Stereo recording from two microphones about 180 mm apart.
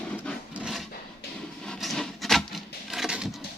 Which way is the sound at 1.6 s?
Centre (ahead or behind).